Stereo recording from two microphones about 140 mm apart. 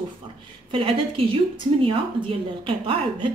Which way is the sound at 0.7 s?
40° right (ahead or behind).